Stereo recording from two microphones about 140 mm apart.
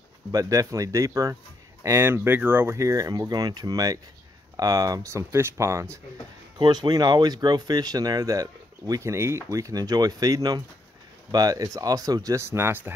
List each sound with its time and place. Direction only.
0.3 s speech: 25° right (ahead or behind)
6.6 s speech: 30° right (ahead or behind); by 12.9 s 15° right (ahead or behind)